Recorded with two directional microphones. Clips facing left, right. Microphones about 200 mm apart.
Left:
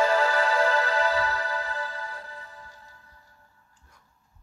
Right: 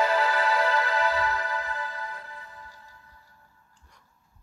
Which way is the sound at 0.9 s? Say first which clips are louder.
Left 1 dB; 30° left (ahead or behind).